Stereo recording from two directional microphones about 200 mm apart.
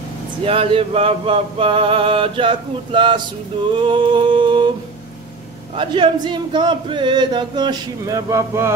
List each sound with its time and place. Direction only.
0.5 s speech: 25° right (ahead or behind)
5.8 s speech: 25° right (ahead or behind)